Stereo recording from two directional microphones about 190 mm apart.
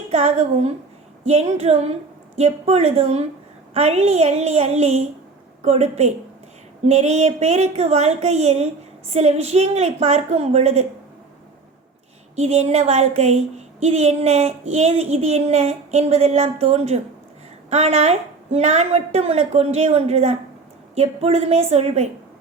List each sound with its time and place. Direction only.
0.1 s speech: 35° right (ahead or behind)
12.4 s speech: 35° right (ahead or behind)